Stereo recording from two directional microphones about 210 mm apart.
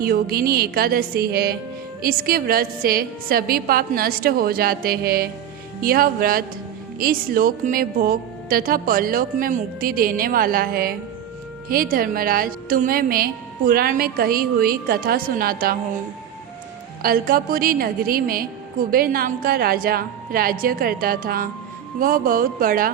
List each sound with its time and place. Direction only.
0.0 s a woman's voice: 45° right (ahead or behind)
17.0 s a woman's voice: 45° right (ahead or behind)